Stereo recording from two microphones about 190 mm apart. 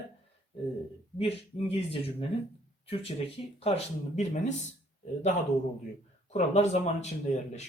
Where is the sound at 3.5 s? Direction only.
30° left (ahead or behind).